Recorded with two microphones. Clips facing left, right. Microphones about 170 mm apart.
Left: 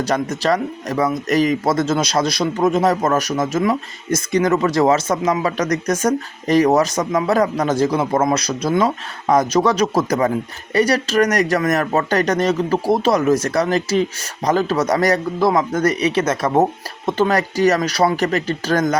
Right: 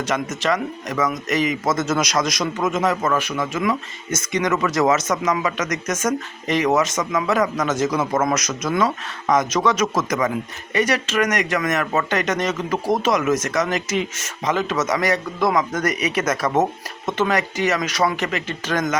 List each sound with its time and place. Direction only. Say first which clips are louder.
0.0 s speech: left 4 dB; 35° left (ahead or behind)